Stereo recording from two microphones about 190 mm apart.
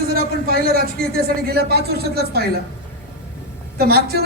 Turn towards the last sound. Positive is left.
turn(degrees=-55)  # may be behind; listen again after turning